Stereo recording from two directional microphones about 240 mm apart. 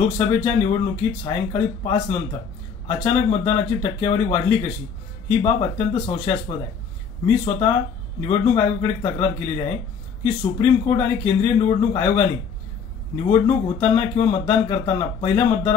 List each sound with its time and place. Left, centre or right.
0.3 s speech: left